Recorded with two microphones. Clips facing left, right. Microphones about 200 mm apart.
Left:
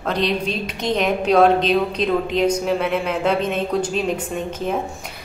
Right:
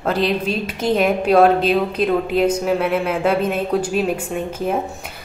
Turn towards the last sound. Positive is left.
turn(degrees=-5)  # may be behind; listen again after turning